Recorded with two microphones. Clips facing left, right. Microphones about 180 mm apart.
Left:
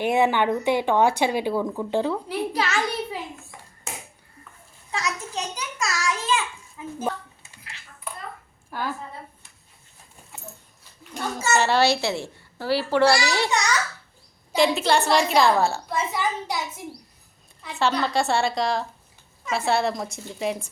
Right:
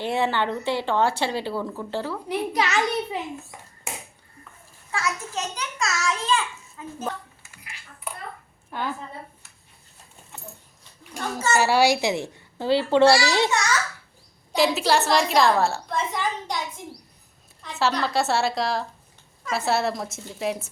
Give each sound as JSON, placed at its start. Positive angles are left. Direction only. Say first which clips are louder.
{"t": 0.0, "sound": "speech", "louder": "left 4 dB", "side_deg": 15}
{"t": 2.3, "sound": "a child's voice", "louder": "right 1 dB", "side_deg": -20}
{"t": 4.9, "sound": "a sound", "louder": "right 1 dB", "side_deg": 20}
{"t": 5.8, "sound": "a sound", "louder": "even", "side_deg": 0}
{"t": 8.7, "sound": "a woman's voice", "louder": "even", "side_deg": 5}
{"t": 11.2, "sound": "speech", "louder": "right 1 dB", "side_deg": 10}
{"t": 11.5, "sound": "a child's voice", "louder": "right 1 dB", "side_deg": -10}
{"t": 14.5, "sound": "a woman's voice", "louder": "left 1 dB", "side_deg": 0}
{"t": 17.9, "sound": "a woman's voice", "louder": "left 1 dB", "side_deg": 0}